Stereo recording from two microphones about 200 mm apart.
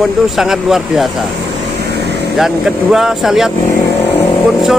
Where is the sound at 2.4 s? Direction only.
Centre (ahead or behind).